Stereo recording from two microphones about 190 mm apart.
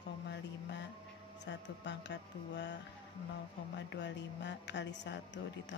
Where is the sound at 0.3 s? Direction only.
65° left (ahead or behind).